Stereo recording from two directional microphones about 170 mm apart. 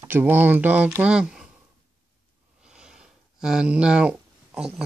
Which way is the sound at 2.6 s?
5° right (ahead or behind).